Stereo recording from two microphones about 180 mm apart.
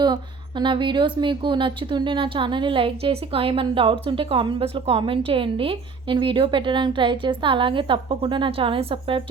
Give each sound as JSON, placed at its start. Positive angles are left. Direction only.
{"t": 0.0, "sound": "speech", "side_deg": -25}